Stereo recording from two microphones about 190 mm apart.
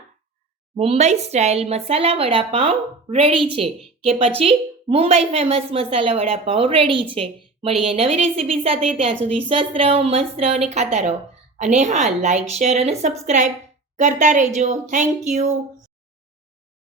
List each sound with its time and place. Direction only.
0.8 s speech: 35° right (ahead or behind)